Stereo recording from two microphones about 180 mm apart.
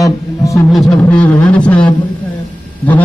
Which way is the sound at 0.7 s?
5° left (ahead or behind).